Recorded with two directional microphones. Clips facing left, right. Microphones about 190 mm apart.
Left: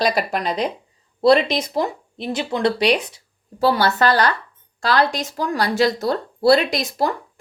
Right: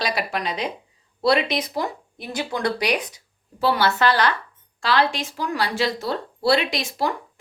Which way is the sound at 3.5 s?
40° left (ahead or behind).